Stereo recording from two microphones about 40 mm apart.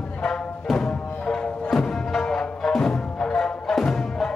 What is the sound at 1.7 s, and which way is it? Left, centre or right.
Music, centre.